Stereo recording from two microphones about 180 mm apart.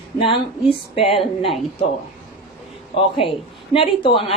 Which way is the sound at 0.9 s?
30° left (ahead or behind).